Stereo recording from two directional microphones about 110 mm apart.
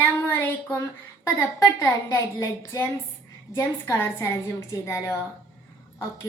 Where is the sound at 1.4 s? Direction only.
25° left (ahead or behind).